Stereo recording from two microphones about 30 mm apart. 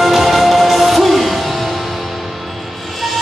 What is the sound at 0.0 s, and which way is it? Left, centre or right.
Music, centre.